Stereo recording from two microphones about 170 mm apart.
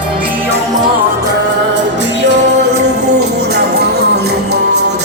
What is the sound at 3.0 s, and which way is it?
Music, 80° right.